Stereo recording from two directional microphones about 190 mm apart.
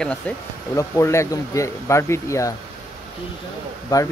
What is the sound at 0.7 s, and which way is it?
Speech, 15° left (ahead or behind).